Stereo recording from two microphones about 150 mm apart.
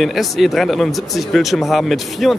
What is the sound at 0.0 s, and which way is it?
Speech, centre (ahead or behind).